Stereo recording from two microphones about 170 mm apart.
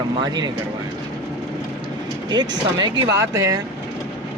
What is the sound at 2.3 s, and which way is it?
Speech, 25° right (ahead or behind).